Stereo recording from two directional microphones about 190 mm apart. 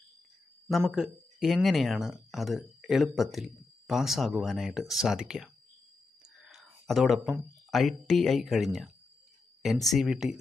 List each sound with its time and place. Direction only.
0.7 s speech: centre (ahead or behind)